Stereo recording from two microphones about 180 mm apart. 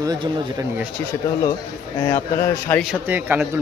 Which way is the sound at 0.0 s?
20° right (ahead or behind).